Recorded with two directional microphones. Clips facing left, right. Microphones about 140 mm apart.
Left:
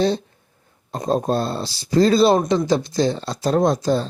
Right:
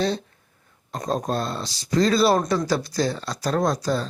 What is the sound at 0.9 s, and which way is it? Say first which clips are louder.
Speech: left 5 dB; 25° left (ahead or behind).